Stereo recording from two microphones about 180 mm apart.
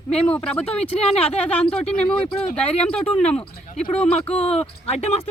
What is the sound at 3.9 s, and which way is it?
Speech, 5° left (ahead or behind).